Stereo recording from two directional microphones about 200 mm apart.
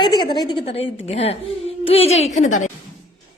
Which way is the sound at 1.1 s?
30° left (ahead or behind).